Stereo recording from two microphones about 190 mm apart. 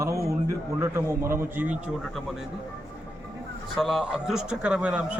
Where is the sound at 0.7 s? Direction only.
15° right (ahead or behind).